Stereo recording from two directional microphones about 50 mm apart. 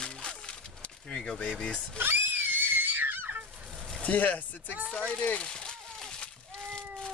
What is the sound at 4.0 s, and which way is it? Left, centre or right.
Speech, left.